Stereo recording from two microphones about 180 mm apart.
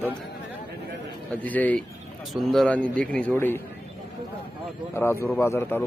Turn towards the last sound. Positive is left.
turn(degrees=10)  # may be behind; listen again after turning